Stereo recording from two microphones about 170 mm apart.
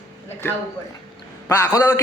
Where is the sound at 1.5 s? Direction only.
15° left (ahead or behind).